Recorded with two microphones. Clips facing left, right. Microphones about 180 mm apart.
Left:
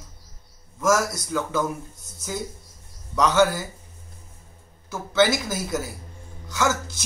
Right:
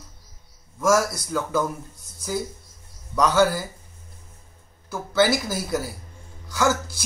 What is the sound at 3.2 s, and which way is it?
Speech, 5° right (ahead or behind).